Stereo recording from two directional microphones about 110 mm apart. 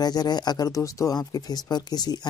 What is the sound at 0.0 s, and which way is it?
Speech, 40° left (ahead or behind).